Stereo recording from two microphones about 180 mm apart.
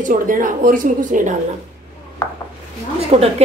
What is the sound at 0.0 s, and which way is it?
A woman's voice, 45° right (ahead or behind).